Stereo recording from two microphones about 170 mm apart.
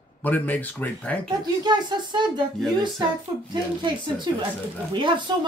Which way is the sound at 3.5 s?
25° right (ahead or behind).